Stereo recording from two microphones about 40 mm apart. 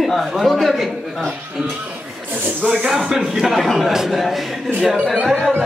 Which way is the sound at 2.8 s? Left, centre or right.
Centre.